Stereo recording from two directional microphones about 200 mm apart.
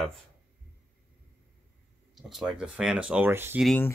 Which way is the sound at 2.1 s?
Centre (ahead or behind).